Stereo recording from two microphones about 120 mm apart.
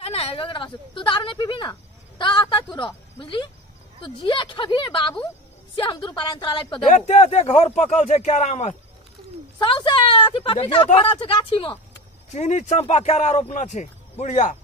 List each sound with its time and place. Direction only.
0.0 s a woman's voice: 55° left (ahead or behind); by 6.8 s 40° left (ahead or behind)
7.0 s a man's voice: 60° left (ahead or behind)
9.6 s a woman's voice: 45° left (ahead or behind)
12.3 s a man's voice: 75° left (ahead or behind)